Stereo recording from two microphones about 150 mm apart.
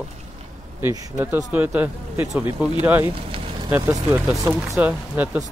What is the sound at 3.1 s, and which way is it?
Vehicle, 35° right (ahead or behind).